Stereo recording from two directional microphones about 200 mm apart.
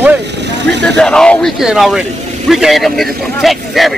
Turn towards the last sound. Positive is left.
turn(degrees=0)  # may be behind; listen again after turning